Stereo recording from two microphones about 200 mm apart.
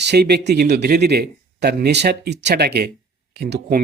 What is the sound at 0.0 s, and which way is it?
Speech, 55° right (ahead or behind).